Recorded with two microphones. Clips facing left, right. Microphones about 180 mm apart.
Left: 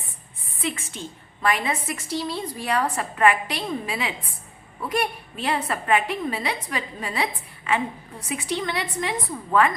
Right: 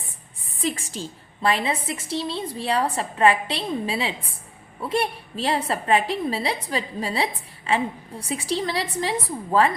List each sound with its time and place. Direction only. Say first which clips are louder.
0.6 s a woman's voice: right 3 dB; 35° right (ahead or behind)